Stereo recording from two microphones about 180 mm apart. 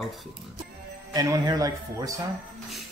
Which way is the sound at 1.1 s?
20° right (ahead or behind).